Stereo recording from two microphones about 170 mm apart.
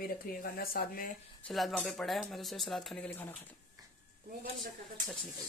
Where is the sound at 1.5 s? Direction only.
Centre (ahead or behind).